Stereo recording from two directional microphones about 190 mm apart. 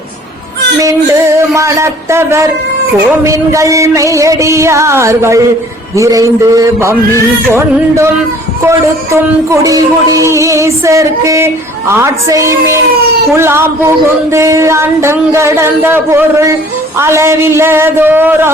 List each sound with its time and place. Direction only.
1.4 s a man's voice: 15° right (ahead or behind)
3.2 s music: 15° right (ahead or behind)
9.5 s music: 15° right (ahead or behind)